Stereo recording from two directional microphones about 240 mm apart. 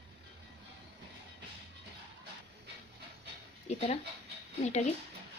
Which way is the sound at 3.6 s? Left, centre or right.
Left.